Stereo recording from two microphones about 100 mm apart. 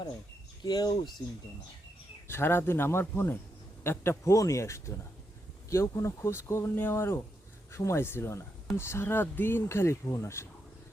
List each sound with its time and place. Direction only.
0.6 s speech: 40° left (ahead or behind)
2.2 s speech: 25° left (ahead or behind)